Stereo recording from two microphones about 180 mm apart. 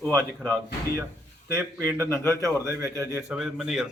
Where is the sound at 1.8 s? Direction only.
15° right (ahead or behind).